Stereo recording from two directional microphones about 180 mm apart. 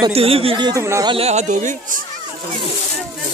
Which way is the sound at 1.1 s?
35° right (ahead or behind).